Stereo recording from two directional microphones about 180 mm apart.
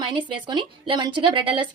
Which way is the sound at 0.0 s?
25° right (ahead or behind).